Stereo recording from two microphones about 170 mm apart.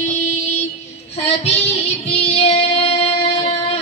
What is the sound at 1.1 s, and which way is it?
Child singing, 35° left (ahead or behind).